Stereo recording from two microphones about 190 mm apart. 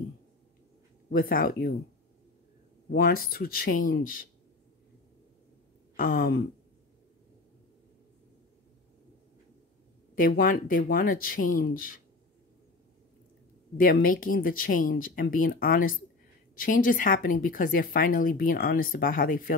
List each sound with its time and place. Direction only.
1.1 s speech: 50° left (ahead or behind)
2.9 s speech: 50° left (ahead or behind)
5.9 s speech: 50° left (ahead or behind)
10.1 s speech: 50° left (ahead or behind)
13.7 s speech: 45° left (ahead or behind)